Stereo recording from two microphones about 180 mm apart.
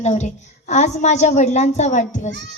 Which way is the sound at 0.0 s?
40° left (ahead or behind).